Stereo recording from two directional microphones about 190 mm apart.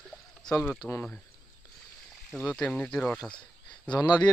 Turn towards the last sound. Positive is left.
turn(degrees=20)  # may be behind; listen again after turning